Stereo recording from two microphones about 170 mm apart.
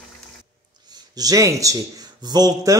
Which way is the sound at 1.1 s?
20° right (ahead or behind).